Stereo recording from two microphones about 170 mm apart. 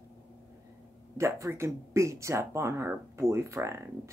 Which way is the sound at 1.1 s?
15° right (ahead or behind).